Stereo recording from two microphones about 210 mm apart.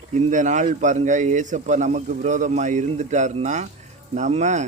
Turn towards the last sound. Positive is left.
turn(degrees=-35)  # may be behind; listen again after turning